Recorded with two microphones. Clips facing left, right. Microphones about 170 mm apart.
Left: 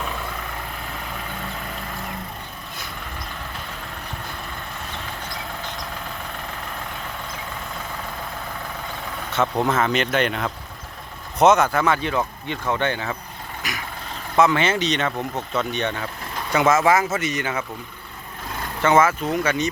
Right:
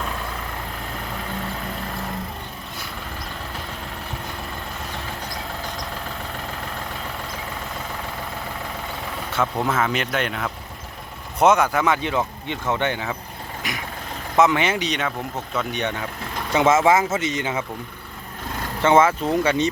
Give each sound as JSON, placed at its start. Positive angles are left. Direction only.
{"t": 9.6, "sound": "speech", "side_deg": -5}
{"t": 13.6, "sound": "vehicle", "side_deg": -25}
{"t": 14.3, "sound": "speech", "side_deg": -20}
{"t": 16.6, "sound": "speech", "side_deg": -25}
{"t": 18.8, "sound": "speech", "side_deg": -25}